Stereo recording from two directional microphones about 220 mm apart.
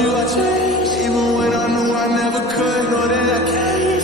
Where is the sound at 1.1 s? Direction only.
Centre (ahead or behind).